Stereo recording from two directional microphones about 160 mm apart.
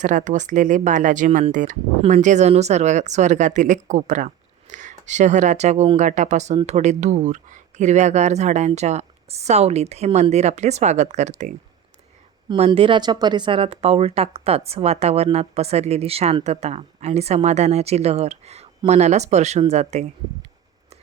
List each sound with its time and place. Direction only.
0.0 s speech: 50° right (ahead or behind)
12.5 s speech: 40° right (ahead or behind)